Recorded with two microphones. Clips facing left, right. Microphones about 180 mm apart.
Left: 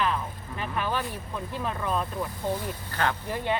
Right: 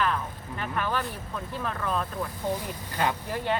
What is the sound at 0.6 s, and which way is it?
Speech, 10° left (ahead or behind).